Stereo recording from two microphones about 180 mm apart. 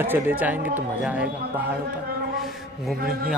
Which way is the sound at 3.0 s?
55° right (ahead or behind).